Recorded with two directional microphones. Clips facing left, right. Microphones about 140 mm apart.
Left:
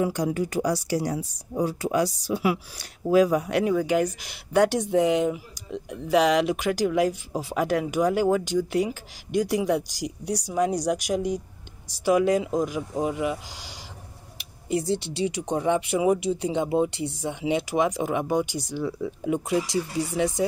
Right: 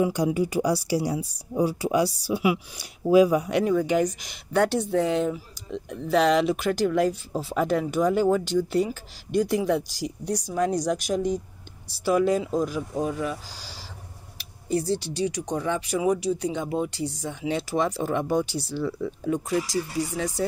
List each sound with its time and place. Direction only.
0.0 s speech: 10° right (ahead or behind); by 20.4 s 20° left (ahead or behind)